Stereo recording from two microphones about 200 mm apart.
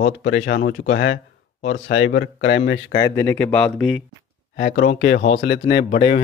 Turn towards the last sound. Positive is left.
turn(degrees=30)  # may be behind; listen again after turning